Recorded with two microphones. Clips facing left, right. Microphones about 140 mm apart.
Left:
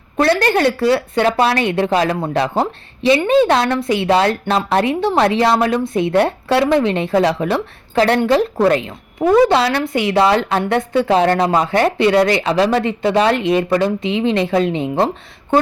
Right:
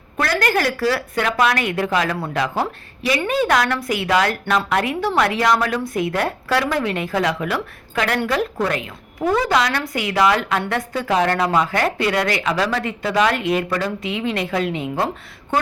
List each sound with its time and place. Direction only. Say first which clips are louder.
0.2 s a woman's voice: left 6 dB; 25° left (ahead or behind)